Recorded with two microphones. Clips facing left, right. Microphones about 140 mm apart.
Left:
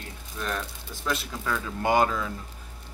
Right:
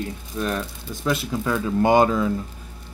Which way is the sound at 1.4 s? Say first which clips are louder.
Right 7 dB; 25° right (ahead or behind).